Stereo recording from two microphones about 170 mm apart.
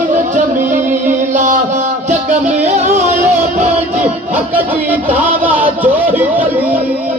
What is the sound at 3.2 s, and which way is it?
Music, 10° right (ahead or behind).